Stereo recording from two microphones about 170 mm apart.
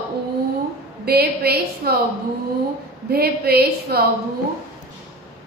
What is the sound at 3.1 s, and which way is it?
Speech, 65° right (ahead or behind).